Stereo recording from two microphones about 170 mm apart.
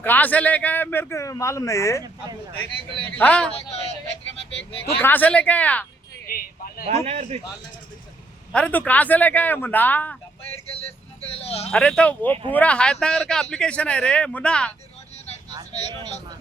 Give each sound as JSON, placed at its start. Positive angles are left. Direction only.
{"t": 0.0, "sound": "speech", "side_deg": 10}
{"t": 3.2, "sound": "speech", "side_deg": 5}
{"t": 4.9, "sound": "speech", "side_deg": 10}
{"t": 6.2, "sound": "speech", "side_deg": 60}
{"t": 6.8, "sound": "a man's voice", "side_deg": -35}
{"t": 8.5, "sound": "speech", "side_deg": 5}
{"t": 11.3, "sound": "speech", "side_deg": 35}
{"t": 11.7, "sound": "speech", "side_deg": 5}
{"t": 15.4, "sound": "vehicle", "side_deg": -25}